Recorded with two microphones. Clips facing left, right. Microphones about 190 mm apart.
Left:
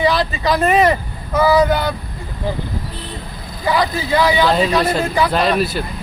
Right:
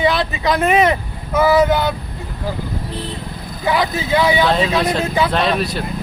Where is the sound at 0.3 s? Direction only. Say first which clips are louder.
Even; 15° right (ahead or behind).